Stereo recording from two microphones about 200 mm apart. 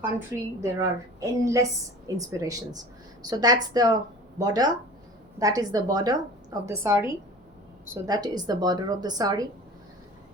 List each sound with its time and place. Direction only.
0.6 s a woman's voice: 15° right (ahead or behind)